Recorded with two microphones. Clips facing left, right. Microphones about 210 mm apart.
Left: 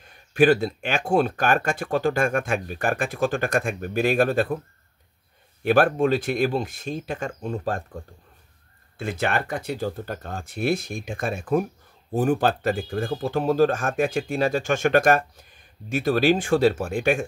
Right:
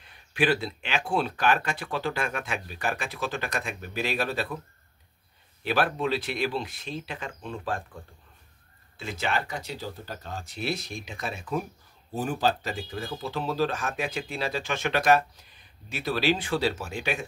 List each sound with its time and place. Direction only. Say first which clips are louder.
0.0 s speech: left 8 dB; 45° left (ahead or behind)
5.6 s speech: left 8 dB; 50° left (ahead or behind)
8.9 s speech: left 5 dB; 55° left (ahead or behind)